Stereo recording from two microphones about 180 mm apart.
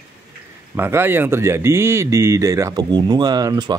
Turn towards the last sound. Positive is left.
turn(degrees=-20)  # may be behind; listen again after turning